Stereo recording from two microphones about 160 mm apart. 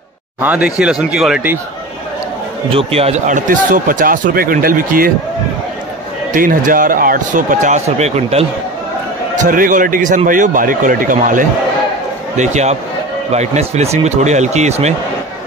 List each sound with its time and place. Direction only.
0.4 s speech: 10° right (ahead or behind)
2.7 s speech: 40° right (ahead or behind); by 5.1 s 65° right (ahead or behind)
6.3 s speech: 60° right (ahead or behind); by 8.5 s 40° right (ahead or behind)
9.3 s speech: 55° right (ahead or behind)
12.4 s speech: 45° right (ahead or behind)